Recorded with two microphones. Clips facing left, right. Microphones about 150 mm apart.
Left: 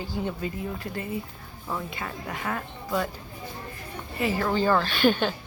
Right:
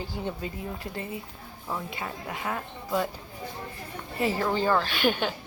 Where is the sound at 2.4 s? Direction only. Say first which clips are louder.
Left 1 dB; 15° right (ahead or behind).